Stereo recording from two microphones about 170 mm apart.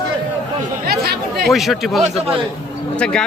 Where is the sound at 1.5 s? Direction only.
Centre (ahead or behind).